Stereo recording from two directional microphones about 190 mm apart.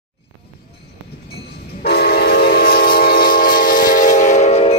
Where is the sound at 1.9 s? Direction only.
55° left (ahead or behind).